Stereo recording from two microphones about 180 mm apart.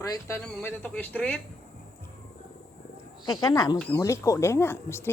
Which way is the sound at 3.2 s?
20° left (ahead or behind).